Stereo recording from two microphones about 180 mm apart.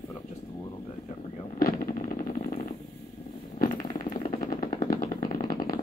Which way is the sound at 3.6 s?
50° left (ahead or behind).